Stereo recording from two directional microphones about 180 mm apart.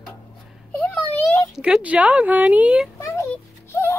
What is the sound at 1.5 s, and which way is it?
Speech, 5° right (ahead or behind).